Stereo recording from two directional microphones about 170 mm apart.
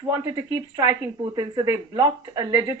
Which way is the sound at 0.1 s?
20° right (ahead or behind).